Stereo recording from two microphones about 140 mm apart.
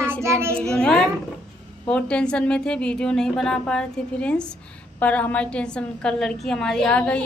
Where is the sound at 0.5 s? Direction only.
5° left (ahead or behind).